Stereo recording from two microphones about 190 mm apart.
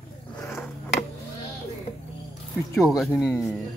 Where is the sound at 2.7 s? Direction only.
Centre (ahead or behind).